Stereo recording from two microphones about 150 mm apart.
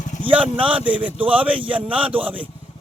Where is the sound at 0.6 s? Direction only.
10° right (ahead or behind).